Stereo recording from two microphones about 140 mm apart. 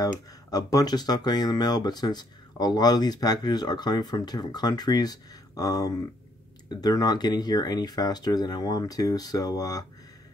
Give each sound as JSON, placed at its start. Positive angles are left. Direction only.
{"t": 0.5, "sound": "speech", "side_deg": 25}